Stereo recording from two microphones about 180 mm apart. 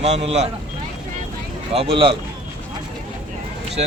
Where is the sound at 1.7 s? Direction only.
30° right (ahead or behind).